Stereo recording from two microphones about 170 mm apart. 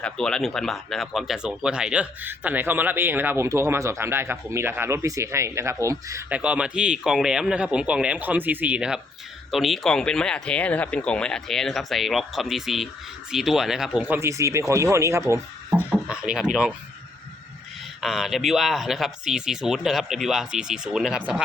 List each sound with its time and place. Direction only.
0.0 s speech: 5° left (ahead or behind); by 15.8 s 15° right (ahead or behind)
15.9 s speech: 5° right (ahead or behind)
18.0 s speech: centre (ahead or behind)